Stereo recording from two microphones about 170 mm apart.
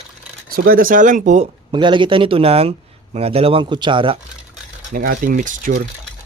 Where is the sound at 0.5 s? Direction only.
60° right (ahead or behind).